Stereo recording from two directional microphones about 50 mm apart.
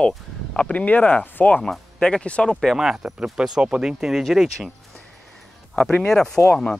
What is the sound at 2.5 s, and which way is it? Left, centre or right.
Speech, centre.